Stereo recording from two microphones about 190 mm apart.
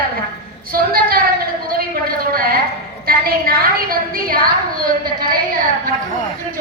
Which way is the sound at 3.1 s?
50° right (ahead or behind).